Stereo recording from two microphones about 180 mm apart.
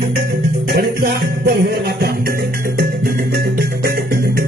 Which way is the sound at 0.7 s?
60° right (ahead or behind).